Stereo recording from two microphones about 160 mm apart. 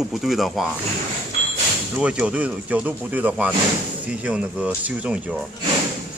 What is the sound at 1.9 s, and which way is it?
Speech, 5° right (ahead or behind).